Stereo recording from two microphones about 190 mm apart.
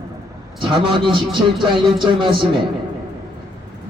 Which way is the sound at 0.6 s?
25° right (ahead or behind).